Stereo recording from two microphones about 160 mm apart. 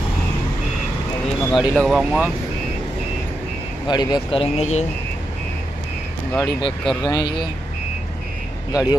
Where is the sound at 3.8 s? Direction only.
25° left (ahead or behind); by 4.9 s 45° left (ahead or behind).